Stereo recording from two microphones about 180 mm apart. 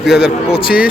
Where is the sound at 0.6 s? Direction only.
55° left (ahead or behind).